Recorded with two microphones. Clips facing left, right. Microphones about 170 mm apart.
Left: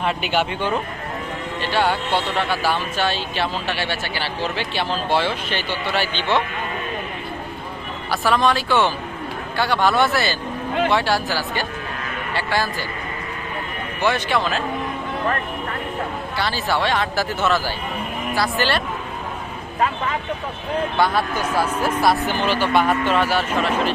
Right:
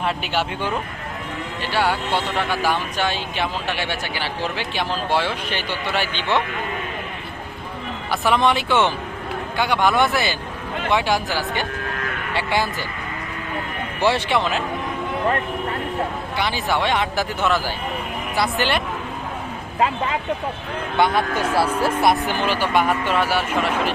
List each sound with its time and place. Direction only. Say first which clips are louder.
0.3 s speech: left 2 dB; centre (ahead or behind)
1.7 s speech: left 1 dB; 10° right (ahead or behind)
8.1 s speech: even; 20° right (ahead or behind)
12.3 s a sound: right 1 dB; 20° right (ahead or behind)
14.0 s speech: right 1 dB; 25° right (ahead or behind)
16.4 s speech: even; 20° right (ahead or behind)
20.9 s speech: right 3 dB; 20° right (ahead or behind)